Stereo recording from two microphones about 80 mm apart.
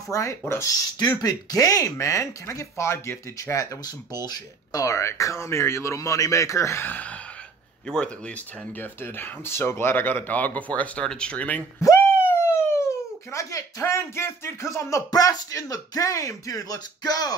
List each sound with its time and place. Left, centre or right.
0.1 s speech: left
0.9 s speech: left
6.9 s gasp: centre
7.8 s speech: centre
8.7 s speech: left
11.8 s speech: left